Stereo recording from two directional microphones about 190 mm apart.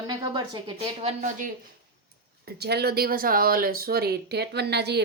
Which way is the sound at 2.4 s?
60° right (ahead or behind).